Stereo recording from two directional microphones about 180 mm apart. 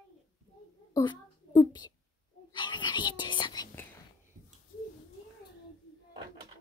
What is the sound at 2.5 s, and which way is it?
Whispering, 25° left (ahead or behind).